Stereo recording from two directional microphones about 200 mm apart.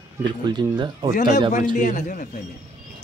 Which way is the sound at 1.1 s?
40° left (ahead or behind).